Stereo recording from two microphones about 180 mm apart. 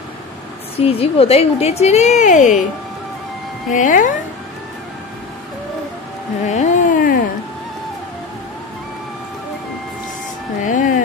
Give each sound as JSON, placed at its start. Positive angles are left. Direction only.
{"t": 0.7, "sound": "a woman's voice", "side_deg": 35}
{"t": 3.7, "sound": "speech", "side_deg": 45}
{"t": 6.4, "sound": "a sound", "side_deg": 40}
{"t": 10.6, "sound": "music", "side_deg": 45}